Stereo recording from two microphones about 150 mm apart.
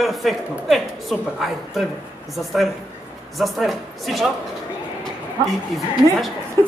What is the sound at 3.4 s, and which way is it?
Speech, centre (ahead or behind).